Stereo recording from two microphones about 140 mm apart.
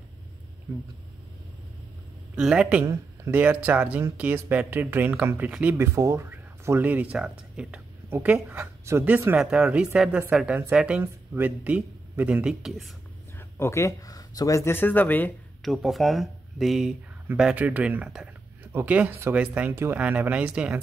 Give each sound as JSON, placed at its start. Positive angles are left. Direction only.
{"t": 2.3, "sound": "speech", "side_deg": -5}
{"t": 5.9, "sound": "a woman's voice", "side_deg": -25}
{"t": 13.4, "sound": "speech", "side_deg": 20}
{"t": 15.6, "sound": "speech", "side_deg": 0}